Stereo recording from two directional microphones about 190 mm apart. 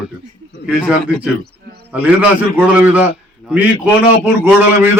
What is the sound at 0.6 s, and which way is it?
Speech, 5° right (ahead or behind).